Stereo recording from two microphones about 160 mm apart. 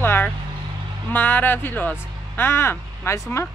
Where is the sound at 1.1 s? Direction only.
10° left (ahead or behind).